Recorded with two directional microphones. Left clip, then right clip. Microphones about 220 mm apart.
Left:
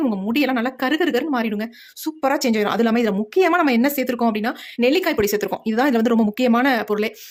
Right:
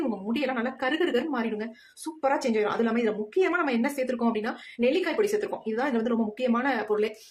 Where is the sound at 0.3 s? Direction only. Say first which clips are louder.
Left 8 dB; 50° left (ahead or behind).